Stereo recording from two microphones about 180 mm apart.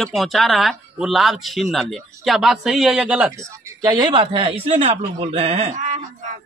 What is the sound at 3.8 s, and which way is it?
Speech, 20° right (ahead or behind).